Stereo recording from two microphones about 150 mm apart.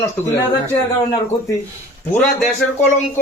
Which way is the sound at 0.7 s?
20° left (ahead or behind).